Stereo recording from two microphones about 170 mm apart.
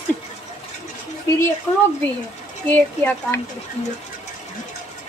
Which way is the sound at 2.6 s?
10° left (ahead or behind).